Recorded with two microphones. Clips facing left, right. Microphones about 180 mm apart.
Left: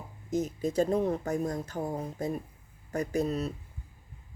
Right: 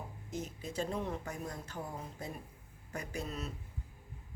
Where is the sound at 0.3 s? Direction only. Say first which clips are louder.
Left 13 dB; 40° left (ahead or behind).